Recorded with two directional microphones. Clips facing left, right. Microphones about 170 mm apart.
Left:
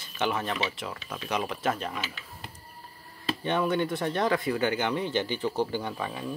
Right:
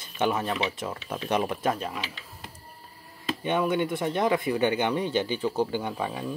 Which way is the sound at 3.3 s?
15° right (ahead or behind).